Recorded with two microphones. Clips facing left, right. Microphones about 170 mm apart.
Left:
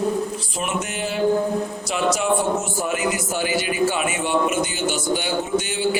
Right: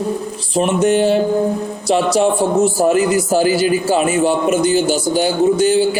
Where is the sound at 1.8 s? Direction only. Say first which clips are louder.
Right 11 dB; 35° right (ahead or behind).